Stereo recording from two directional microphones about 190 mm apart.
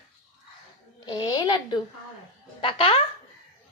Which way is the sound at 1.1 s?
20° left (ahead or behind).